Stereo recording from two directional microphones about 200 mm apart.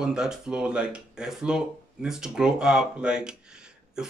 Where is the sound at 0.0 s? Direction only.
5° right (ahead or behind).